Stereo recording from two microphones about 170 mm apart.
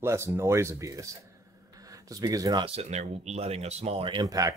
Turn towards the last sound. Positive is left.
turn(degrees=-20)  # may be behind; listen again after turning